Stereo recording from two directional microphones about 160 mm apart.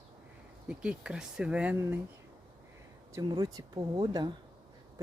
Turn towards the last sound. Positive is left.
turn(degrees=-25)  # may be behind; listen again after turning